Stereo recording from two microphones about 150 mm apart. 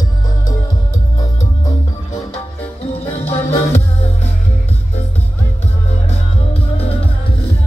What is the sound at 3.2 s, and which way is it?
Music, 45° left (ahead or behind).